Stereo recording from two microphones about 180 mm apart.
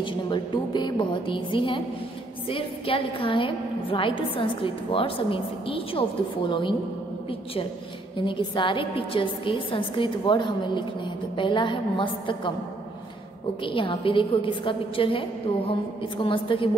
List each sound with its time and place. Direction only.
0.0 s a woman's voice: 25° left (ahead or behind)
8.2 s a woman's voice: 25° left (ahead or behind)
13.7 s a woman's voice: 30° left (ahead or behind)